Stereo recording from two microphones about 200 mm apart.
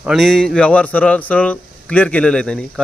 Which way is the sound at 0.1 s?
Centre (ahead or behind).